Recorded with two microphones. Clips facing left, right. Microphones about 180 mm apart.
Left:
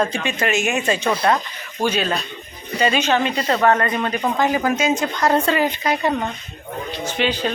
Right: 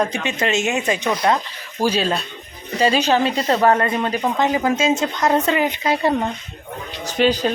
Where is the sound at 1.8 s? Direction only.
30° right (ahead or behind).